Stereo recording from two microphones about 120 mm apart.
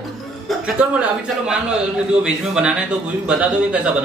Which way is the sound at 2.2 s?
10° right (ahead or behind).